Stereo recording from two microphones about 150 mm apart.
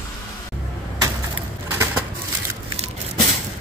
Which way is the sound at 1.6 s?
15° right (ahead or behind).